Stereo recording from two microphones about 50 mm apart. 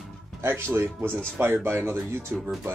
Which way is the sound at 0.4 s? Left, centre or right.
Right.